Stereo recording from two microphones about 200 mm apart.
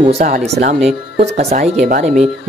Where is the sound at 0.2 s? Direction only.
40° right (ahead or behind).